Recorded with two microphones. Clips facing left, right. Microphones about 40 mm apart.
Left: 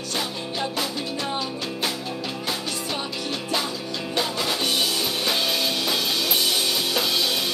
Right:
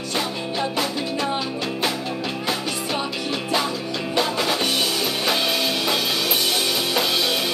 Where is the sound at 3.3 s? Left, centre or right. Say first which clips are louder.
Right 4 dB; centre.